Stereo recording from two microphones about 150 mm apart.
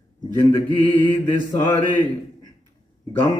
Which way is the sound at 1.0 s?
25° left (ahead or behind).